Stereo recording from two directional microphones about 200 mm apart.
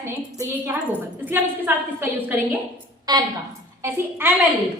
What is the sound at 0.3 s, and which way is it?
A woman's voice, 10° right (ahead or behind).